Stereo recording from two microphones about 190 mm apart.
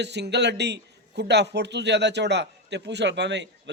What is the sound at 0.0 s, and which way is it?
A man's voice, 65° right (ahead or behind).